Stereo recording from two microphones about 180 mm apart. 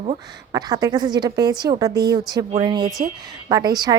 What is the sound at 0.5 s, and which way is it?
A woman's voice, 20° right (ahead or behind).